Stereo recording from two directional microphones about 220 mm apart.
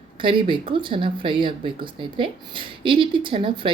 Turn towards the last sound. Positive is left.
turn(degrees=-20)  # may be behind; listen again after turning